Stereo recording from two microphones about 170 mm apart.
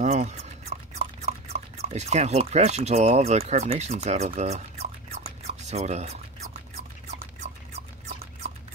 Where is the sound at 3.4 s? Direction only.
40° right (ahead or behind).